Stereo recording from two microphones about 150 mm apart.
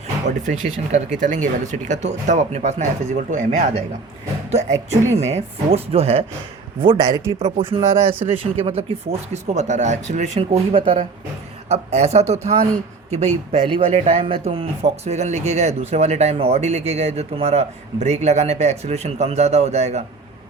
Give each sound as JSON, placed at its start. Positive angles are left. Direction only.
{"t": 0.3, "sound": "speech", "side_deg": -55}
{"t": 9.3, "sound": "speech", "side_deg": -50}